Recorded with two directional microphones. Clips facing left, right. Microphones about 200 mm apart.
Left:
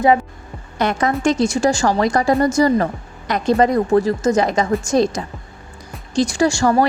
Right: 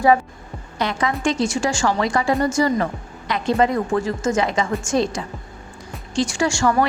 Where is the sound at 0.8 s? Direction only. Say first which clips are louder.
Left 4 dB; 45° left (ahead or behind).